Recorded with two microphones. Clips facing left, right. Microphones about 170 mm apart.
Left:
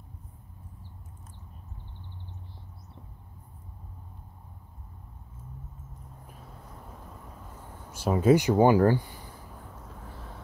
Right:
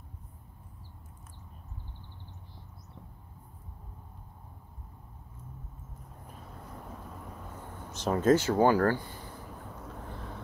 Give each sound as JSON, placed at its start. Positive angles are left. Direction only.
{"t": 7.9, "sound": "speech", "side_deg": 10}